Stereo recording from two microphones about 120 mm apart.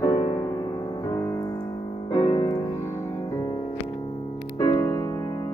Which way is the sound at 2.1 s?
40° left (ahead or behind).